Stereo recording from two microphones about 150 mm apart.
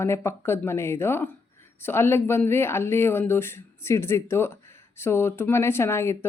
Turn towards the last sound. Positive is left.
turn(degrees=15)  # may be behind; listen again after turning